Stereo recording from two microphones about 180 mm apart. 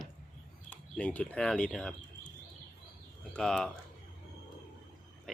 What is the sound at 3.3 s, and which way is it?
Speech, 5° left (ahead or behind).